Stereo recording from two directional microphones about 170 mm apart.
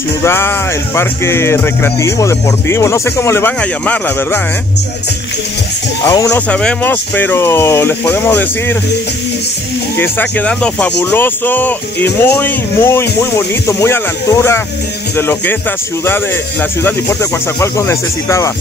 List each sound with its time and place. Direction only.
0.2 s speech: 15° left (ahead or behind)
6.0 s speech: 15° left (ahead or behind)
9.9 s speech: 10° left (ahead or behind)
16.8 s speech: 15° left (ahead or behind)